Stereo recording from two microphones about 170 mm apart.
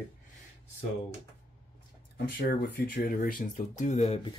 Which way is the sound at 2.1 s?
60° left (ahead or behind).